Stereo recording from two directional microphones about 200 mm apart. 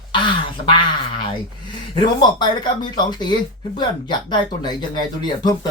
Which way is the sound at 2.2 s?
20° left (ahead or behind).